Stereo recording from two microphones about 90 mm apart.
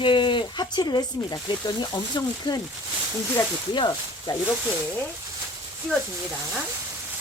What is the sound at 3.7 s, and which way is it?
Speech, 60° left (ahead or behind).